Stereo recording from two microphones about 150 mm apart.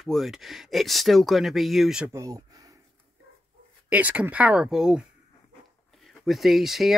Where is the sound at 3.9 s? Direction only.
10° right (ahead or behind).